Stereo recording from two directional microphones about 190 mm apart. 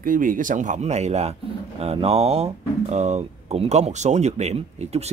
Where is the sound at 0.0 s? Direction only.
45° right (ahead or behind).